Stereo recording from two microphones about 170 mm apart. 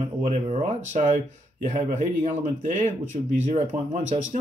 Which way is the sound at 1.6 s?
45° right (ahead or behind).